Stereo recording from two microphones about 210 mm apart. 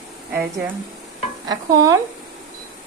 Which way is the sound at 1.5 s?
15° right (ahead or behind).